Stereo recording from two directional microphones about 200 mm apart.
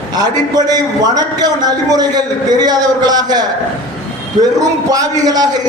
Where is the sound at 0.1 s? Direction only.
20° right (ahead or behind).